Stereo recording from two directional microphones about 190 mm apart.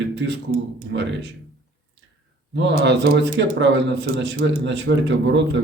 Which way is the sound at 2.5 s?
65° right (ahead or behind).